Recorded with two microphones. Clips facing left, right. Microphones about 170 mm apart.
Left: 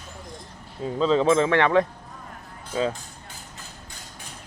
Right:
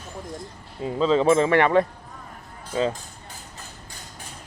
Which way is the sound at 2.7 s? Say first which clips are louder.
Right 1 dB; centre (ahead or behind).